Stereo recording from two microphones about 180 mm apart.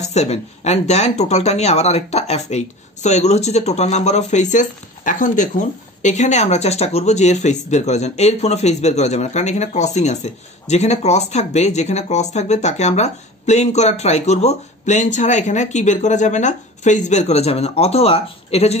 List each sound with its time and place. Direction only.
0.0 s speech: 40° left (ahead or behind)